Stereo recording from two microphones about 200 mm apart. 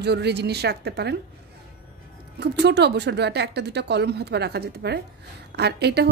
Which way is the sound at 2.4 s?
55° right (ahead or behind).